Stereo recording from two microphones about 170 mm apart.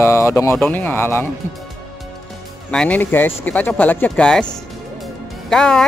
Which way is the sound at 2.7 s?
5° left (ahead or behind).